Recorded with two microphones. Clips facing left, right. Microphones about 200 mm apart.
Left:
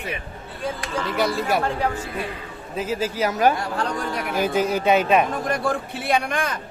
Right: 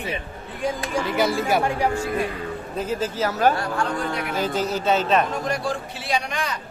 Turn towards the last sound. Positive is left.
turn(degrees=55)  # may be behind; listen again after turning